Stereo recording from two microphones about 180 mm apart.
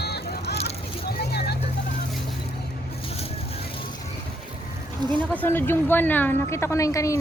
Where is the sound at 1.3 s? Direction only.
65° left (ahead or behind).